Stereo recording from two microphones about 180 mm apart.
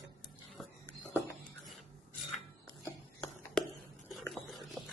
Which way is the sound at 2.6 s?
20° left (ahead or behind).